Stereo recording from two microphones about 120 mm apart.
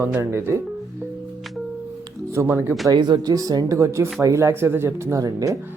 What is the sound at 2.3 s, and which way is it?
Speech, 20° right (ahead or behind).